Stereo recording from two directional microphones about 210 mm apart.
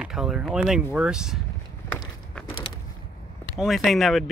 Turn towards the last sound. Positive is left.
turn(degrees=0)  # may be behind; listen again after turning